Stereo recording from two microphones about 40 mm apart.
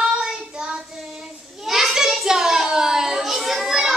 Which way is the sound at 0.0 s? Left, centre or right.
Right.